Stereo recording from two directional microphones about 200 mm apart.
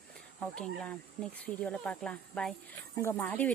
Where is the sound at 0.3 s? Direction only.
5° left (ahead or behind).